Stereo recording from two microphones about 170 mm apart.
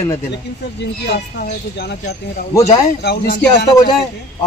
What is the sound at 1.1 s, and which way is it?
Speech, 75° left (ahead or behind).